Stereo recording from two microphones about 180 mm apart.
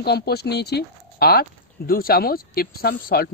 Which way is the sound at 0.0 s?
65° left (ahead or behind).